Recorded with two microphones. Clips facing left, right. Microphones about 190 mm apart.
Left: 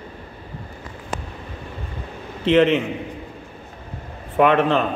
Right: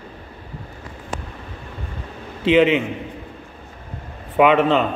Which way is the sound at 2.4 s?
5° right (ahead or behind).